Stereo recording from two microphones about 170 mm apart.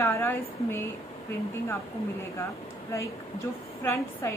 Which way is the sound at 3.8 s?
15° left (ahead or behind).